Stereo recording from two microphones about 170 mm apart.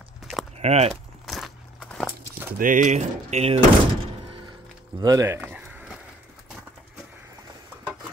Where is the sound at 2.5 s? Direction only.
50° right (ahead or behind).